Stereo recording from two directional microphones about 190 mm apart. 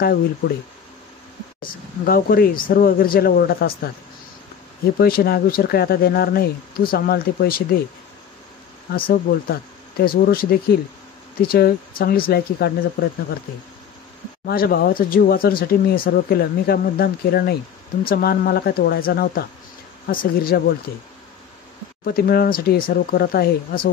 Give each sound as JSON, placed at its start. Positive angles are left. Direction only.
{"t": 1.6, "sound": "speech", "side_deg": 50}
{"t": 4.9, "sound": "speech", "side_deg": 50}
{"t": 8.9, "sound": "speech", "side_deg": 50}
{"t": 14.4, "sound": "speech", "side_deg": 50}
{"t": 22.0, "sound": "speech", "side_deg": 55}